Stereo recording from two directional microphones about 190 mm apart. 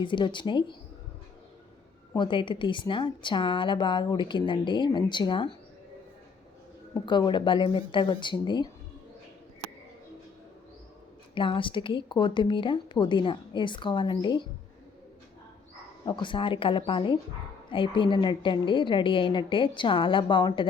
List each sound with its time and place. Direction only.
0.0 s a woman's voice: 25° left (ahead or behind)
2.1 s a woman's voice: 25° left (ahead or behind)
7.0 s a woman's voice: 25° left (ahead or behind)
11.3 s a woman's voice: 25° left (ahead or behind)
16.0 s a woman's voice: 25° left (ahead or behind)